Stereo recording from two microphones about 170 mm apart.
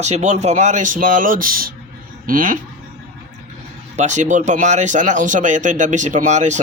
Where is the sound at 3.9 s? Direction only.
45° right (ahead or behind).